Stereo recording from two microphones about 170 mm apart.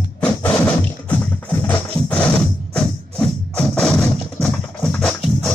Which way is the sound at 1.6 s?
10° left (ahead or behind).